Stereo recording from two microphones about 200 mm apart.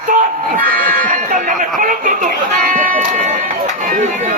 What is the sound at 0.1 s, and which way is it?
Music, 40° right (ahead or behind).